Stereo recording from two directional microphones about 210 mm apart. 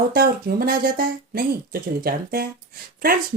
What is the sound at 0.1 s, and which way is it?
A woman's voice, 45° right (ahead or behind).